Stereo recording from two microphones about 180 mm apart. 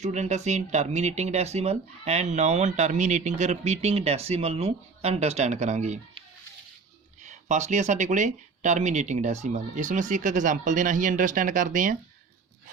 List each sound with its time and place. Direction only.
0.0 s speech: 40° right (ahead or behind)
7.3 s speech: 40° right (ahead or behind)